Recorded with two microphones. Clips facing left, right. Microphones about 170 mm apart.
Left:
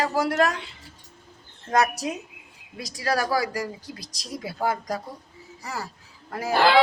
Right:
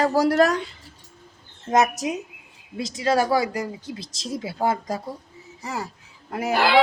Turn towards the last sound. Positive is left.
turn(degrees=-20)  # may be behind; listen again after turning